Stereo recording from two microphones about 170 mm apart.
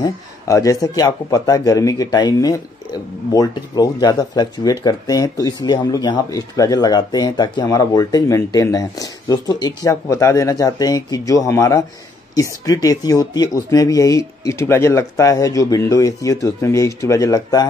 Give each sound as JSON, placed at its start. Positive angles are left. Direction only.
{"t": 0.0, "sound": "speech", "side_deg": 20}